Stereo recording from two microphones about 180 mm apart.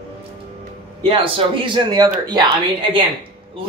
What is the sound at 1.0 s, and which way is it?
Speech, 30° right (ahead or behind).